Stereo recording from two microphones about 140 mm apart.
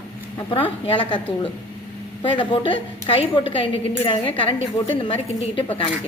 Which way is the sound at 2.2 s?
35° left (ahead or behind).